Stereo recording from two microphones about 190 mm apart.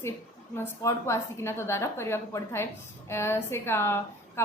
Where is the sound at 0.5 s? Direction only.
15° left (ahead or behind).